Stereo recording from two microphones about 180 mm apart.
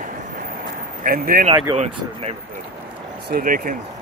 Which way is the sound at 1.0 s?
55° right (ahead or behind).